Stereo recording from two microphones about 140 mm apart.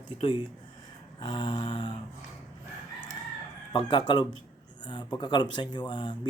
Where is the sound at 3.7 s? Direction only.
35° left (ahead or behind).